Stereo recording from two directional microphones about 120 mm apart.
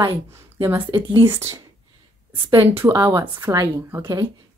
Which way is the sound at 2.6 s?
15° right (ahead or behind).